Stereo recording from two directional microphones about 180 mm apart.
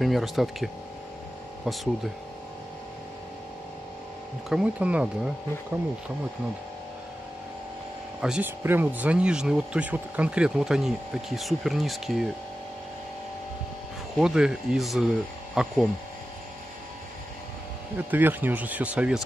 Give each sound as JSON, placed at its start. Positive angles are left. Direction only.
{"t": 0.0, "sound": "speech", "side_deg": 0}
{"t": 4.5, "sound": "speech", "side_deg": -5}
{"t": 8.2, "sound": "speech", "side_deg": -5}
{"t": 14.1, "sound": "speech", "side_deg": -5}
{"t": 17.9, "sound": "speech", "side_deg": -10}